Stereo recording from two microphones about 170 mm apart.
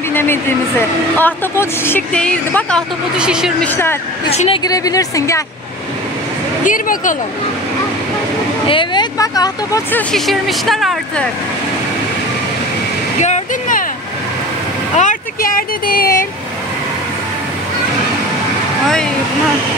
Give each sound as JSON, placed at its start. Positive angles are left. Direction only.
{"t": 0.1, "sound": "a woman's voice", "side_deg": 15}
{"t": 3.2, "sound": "speech", "side_deg": -5}
{"t": 3.6, "sound": "a woman's voice", "side_deg": 10}
{"t": 4.3, "sound": "a woman's voice", "side_deg": 35}
{"t": 4.6, "sound": "speech", "side_deg": 20}
{"t": 6.6, "sound": "speech", "side_deg": 50}
{"t": 8.6, "sound": "speech", "side_deg": 30}
{"t": 9.9, "sound": "speech", "side_deg": 0}
{"t": 13.2, "sound": "waterfall", "side_deg": 45}
{"t": 15.0, "sound": "speech", "side_deg": 50}